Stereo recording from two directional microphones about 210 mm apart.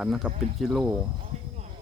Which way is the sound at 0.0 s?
5° right (ahead or behind).